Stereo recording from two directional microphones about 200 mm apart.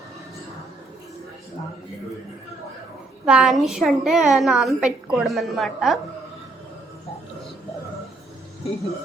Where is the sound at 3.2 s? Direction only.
5° right (ahead or behind).